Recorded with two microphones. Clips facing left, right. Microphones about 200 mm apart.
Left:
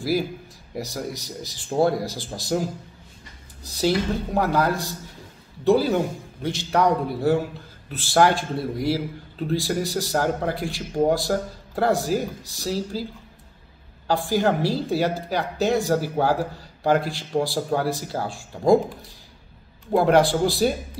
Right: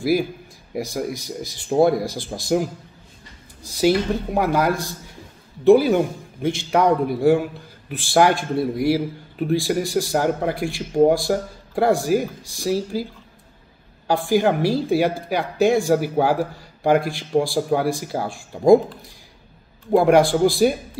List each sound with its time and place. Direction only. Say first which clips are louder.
0.7 s a man's voice: right 5 dB; 15° right (ahead or behind)
3.8 s a man's voice: right 4 dB; 15° right (ahead or behind)
14.0 s a man's voice: right 3 dB; 15° right (ahead or behind)
19.9 s a man's voice: right 3 dB; 15° right (ahead or behind)